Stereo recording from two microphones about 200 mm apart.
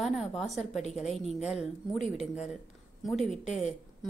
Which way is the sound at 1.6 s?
35° left (ahead or behind).